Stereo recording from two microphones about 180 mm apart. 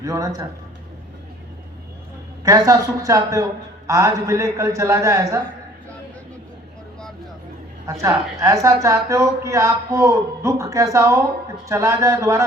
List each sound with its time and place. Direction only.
0.0 s speech: 20° right (ahead or behind)
2.4 s a woman's voice: 20° right (ahead or behind)
8.0 s a woman's voice: 20° right (ahead or behind)